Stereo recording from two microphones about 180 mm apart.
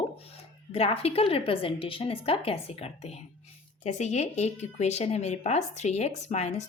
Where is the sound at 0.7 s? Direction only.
35° left (ahead or behind).